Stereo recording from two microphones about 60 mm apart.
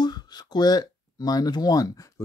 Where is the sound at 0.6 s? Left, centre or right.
Left.